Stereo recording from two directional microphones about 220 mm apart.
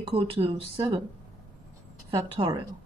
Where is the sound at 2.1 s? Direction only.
20° right (ahead or behind).